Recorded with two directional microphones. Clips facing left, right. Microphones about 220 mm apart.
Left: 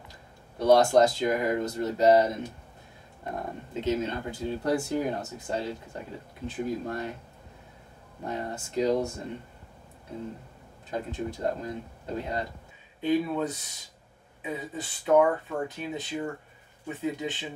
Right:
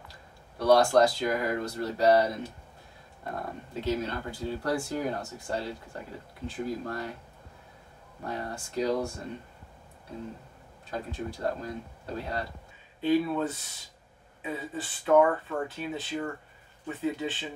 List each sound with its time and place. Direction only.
0.6 s speech: 20° left (ahead or behind)
8.2 s speech: 20° left (ahead or behind)
10.9 s speech: 20° left (ahead or behind)